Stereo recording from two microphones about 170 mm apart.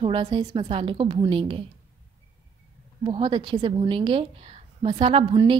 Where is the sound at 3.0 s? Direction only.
30° right (ahead or behind).